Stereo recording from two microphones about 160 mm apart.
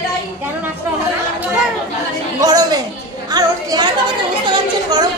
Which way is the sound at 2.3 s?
25° right (ahead or behind).